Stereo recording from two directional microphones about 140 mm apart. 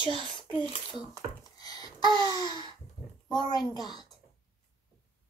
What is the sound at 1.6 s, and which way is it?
Babbling, 30° left (ahead or behind).